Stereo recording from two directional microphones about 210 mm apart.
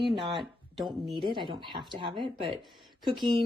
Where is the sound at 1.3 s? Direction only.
25° right (ahead or behind).